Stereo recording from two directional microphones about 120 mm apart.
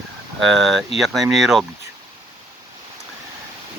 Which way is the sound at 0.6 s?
Centre (ahead or behind).